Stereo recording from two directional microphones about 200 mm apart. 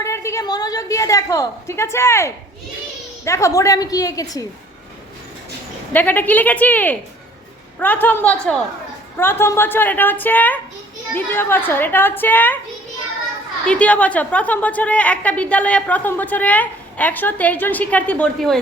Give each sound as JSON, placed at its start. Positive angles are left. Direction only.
{"t": 0.0, "sound": "a woman's voice", "side_deg": 15}
{"t": 5.9, "sound": "a woman's voice", "side_deg": 10}
{"t": 13.7, "sound": "a woman's voice", "side_deg": 5}